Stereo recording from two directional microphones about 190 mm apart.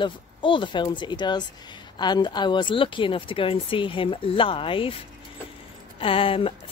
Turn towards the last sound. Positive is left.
turn(degrees=30)  # may be behind; listen again after turning